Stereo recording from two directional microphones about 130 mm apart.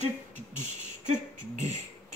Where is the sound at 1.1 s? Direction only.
65° right (ahead or behind).